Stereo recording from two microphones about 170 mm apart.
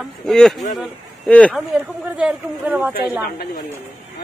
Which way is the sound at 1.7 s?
5° right (ahead or behind).